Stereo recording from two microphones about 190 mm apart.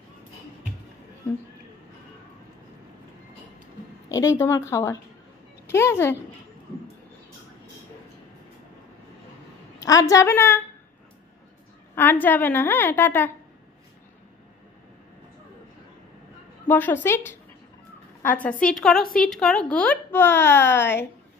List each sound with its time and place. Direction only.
4.1 s a woman's voice: 15° left (ahead or behind)
9.8 s a woman's voice: 20° left (ahead or behind)
11.9 s a woman's voice: 10° left (ahead or behind)
16.6 s a woman's voice: 10° left (ahead or behind)